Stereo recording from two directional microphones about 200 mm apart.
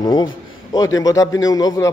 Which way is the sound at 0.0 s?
20° left (ahead or behind).